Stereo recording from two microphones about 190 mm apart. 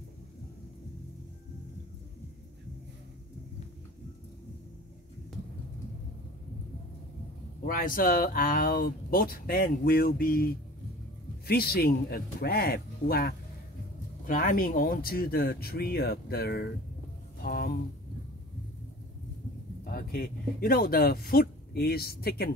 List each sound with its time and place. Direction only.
7.6 s speech: 50° left (ahead or behind)
19.8 s speech: 50° left (ahead or behind)